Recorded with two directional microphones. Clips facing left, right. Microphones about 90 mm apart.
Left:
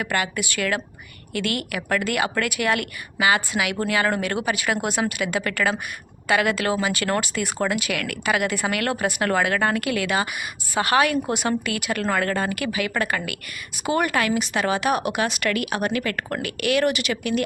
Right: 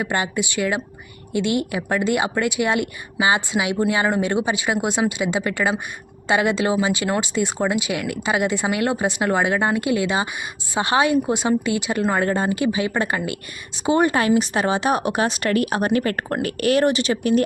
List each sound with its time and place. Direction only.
0.0 s a woman's voice: 25° right (ahead or behind)